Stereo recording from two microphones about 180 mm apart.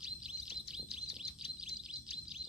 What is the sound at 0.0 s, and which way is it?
Bird, 5° right (ahead or behind).